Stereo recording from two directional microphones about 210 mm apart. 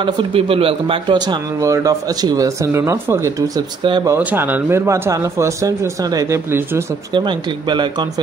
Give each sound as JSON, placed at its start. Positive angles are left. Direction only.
{"t": 0.0, "sound": "a man's voice", "side_deg": -25}